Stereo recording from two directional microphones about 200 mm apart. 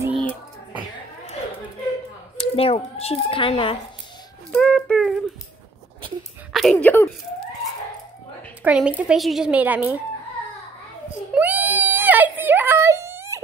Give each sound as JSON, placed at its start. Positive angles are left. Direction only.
{"t": 2.3, "sound": "speech", "side_deg": 30}
{"t": 4.5, "sound": "a sound", "side_deg": 5}
{"t": 6.5, "sound": "speech", "side_deg": 0}
{"t": 8.6, "sound": "a woman's voice", "side_deg": -5}
{"t": 11.3, "sound": "whimper", "side_deg": -10}